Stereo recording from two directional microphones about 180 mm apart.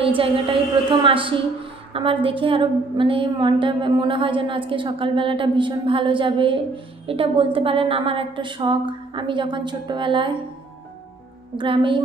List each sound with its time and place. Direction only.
0.0 s a woman's voice: 30° right (ahead or behind)
11.5 s a woman's voice: 30° right (ahead or behind)